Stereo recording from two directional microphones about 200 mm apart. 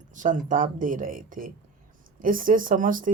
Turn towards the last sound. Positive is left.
turn(degrees=-40)  # may be behind; listen again after turning